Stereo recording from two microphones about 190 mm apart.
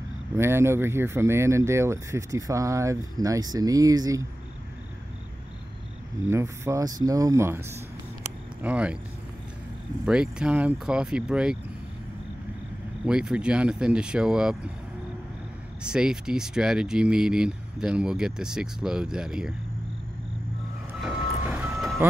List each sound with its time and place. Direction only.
0.4 s speech: 15° right (ahead or behind)
6.2 s speech: 15° right (ahead or behind)
10.0 s speech: 5° right (ahead or behind)
13.0 s speech: 5° right (ahead or behind)
15.8 s speech: 5° right (ahead or behind)
21.0 s reversing beeps: 5° right (ahead or behind)